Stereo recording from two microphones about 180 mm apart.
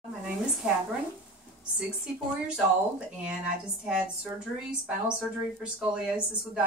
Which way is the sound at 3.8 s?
5° right (ahead or behind).